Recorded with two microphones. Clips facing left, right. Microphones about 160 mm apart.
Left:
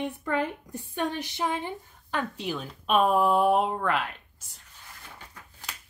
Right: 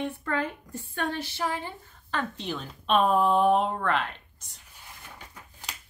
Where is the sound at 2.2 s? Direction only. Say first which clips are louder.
Left 1 dB; 5° left (ahead or behind).